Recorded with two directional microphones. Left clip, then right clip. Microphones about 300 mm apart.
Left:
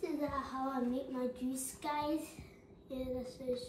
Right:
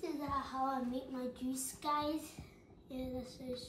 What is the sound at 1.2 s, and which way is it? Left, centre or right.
Speech, centre.